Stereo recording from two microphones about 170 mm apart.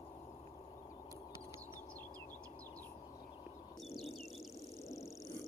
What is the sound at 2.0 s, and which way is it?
Bird, 10° left (ahead or behind).